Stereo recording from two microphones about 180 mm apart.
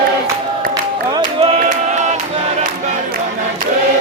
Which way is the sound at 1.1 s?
30° right (ahead or behind).